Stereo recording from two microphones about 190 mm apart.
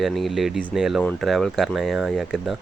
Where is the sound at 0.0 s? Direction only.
Centre (ahead or behind).